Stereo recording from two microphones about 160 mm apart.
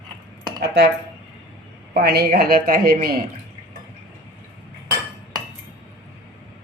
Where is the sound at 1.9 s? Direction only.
80° right.